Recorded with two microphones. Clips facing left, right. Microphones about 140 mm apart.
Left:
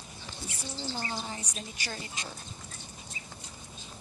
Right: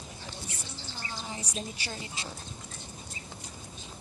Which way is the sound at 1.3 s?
30° right (ahead or behind).